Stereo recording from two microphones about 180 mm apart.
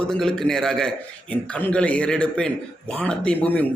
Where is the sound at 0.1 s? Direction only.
5° left (ahead or behind).